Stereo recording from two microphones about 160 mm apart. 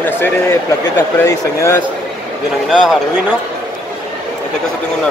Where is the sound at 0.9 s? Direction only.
15° left (ahead or behind).